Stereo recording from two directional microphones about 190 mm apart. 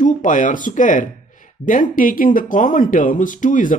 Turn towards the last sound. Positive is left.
turn(degrees=45)  # may be behind; listen again after turning